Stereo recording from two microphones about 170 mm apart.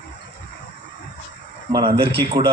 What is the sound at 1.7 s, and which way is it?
Speech, 25° right (ahead or behind).